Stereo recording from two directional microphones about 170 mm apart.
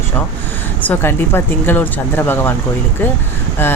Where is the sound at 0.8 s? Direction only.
10° left (ahead or behind).